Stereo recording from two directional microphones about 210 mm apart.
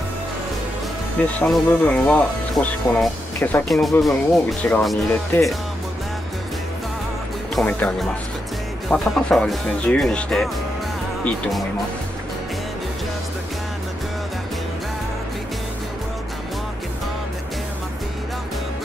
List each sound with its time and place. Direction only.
1.4 s speech: 5° left (ahead or behind)
7.5 s speech: 5° left (ahead or behind)